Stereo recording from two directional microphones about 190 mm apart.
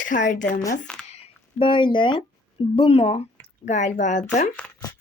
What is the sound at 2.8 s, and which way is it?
A woman's voice, 30° left (ahead or behind).